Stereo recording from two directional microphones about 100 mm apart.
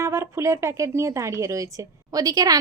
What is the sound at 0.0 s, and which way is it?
Speech, 30° right (ahead or behind).